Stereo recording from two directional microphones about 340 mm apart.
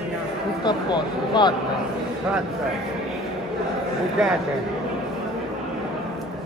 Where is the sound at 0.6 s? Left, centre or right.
Centre.